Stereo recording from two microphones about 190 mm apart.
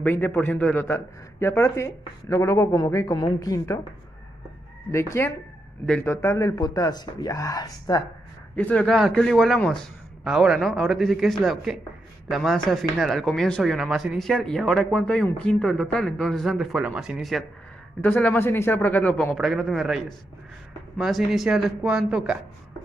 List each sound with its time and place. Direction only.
0.0 s a man's voice: 10° left (ahead or behind)
4.9 s a man's voice: 15° left (ahead or behind)
8.5 s a man's voice: 5° left (ahead or behind)